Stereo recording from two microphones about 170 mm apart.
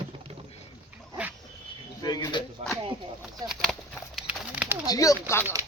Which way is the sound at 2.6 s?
40° right (ahead or behind).